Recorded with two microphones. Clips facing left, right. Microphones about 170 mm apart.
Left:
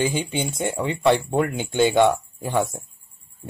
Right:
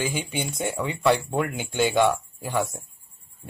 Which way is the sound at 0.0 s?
25° left (ahead or behind).